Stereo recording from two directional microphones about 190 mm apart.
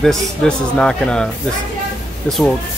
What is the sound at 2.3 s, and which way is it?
Speech, 5° left (ahead or behind).